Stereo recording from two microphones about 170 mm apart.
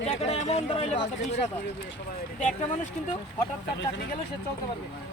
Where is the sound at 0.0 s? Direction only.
40° left (ahead or behind).